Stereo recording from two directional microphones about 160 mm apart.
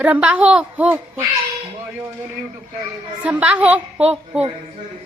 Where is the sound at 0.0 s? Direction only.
10° right (ahead or behind).